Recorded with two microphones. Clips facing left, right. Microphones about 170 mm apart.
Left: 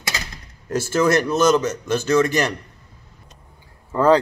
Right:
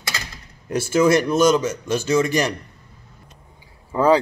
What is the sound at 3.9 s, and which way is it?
Speech, 10° right (ahead or behind).